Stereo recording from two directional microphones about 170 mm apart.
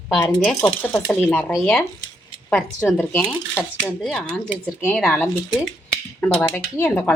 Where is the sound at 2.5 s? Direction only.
5° left (ahead or behind).